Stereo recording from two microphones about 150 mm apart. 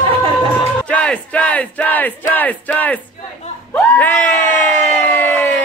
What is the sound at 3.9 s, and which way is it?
Crowd, 10° left (ahead or behind).